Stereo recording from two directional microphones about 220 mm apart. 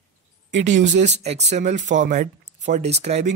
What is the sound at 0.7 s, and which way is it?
Speech, 35° right (ahead or behind).